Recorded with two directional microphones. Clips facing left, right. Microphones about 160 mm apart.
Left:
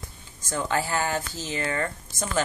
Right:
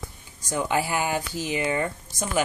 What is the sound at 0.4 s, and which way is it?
Speech, 15° right (ahead or behind).